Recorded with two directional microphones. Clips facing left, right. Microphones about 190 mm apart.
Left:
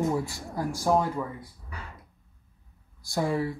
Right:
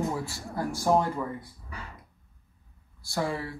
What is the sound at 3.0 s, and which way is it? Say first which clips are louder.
Speech: left 3 dB; 20° left (ahead or behind).